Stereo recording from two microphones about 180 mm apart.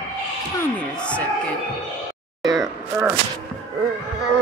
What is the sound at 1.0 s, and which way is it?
Speech, 5° left (ahead or behind).